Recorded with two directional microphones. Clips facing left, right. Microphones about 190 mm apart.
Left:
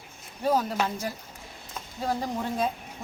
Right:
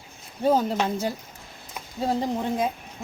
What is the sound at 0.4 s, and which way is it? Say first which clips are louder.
Speech: right 4 dB; 30° right (ahead or behind).